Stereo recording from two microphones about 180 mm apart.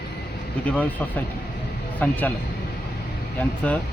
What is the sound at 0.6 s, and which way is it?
Speech, 10° left (ahead or behind).